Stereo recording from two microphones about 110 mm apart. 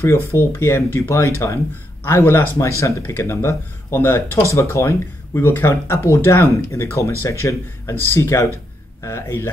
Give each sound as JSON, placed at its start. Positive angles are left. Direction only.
{"t": 0.3, "sound": "speech", "side_deg": 20}